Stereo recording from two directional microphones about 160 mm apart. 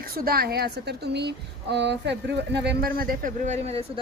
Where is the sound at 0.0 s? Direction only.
70° right (ahead or behind).